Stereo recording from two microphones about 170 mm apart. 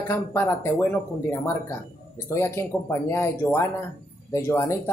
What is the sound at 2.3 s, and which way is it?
Speech, 15° left (ahead or behind).